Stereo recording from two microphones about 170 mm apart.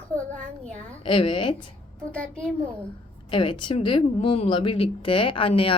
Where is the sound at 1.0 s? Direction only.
30° left (ahead or behind).